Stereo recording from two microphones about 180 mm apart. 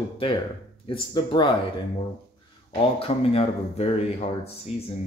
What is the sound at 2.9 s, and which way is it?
Speech, 30° left (ahead or behind).